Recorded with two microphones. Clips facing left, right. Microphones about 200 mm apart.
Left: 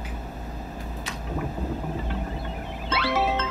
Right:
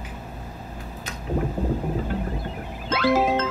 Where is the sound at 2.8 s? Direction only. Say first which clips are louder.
Right 5 dB; 45° right (ahead or behind).